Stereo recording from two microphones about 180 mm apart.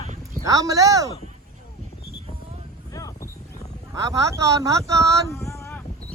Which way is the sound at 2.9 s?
20° left (ahead or behind).